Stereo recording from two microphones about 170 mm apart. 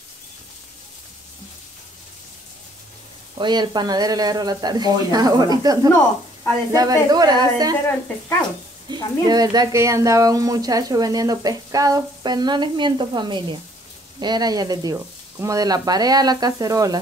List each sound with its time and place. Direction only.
3.3 s speech: 25° right (ahead or behind)
8.9 s speech: 25° right (ahead or behind)